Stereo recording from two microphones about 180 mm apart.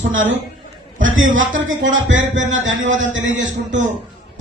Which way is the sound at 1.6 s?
90° right.